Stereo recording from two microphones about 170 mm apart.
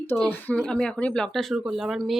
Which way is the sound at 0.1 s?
10° left (ahead or behind).